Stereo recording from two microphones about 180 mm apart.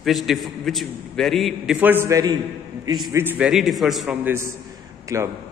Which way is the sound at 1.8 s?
15° right (ahead or behind).